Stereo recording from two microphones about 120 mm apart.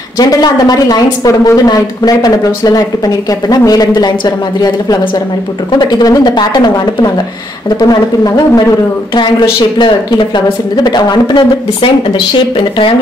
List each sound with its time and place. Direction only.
0.2 s a woman's voice: 35° left (ahead or behind)